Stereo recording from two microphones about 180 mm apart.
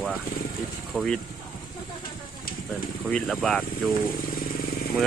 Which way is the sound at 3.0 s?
5° left (ahead or behind).